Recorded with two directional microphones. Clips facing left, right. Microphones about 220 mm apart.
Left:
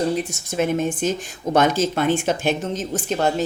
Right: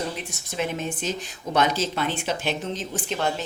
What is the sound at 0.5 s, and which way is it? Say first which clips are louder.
Speech: left 7 dB; 45° left (ahead or behind).